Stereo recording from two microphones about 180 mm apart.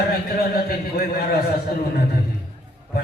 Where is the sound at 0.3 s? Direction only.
60° left (ahead or behind).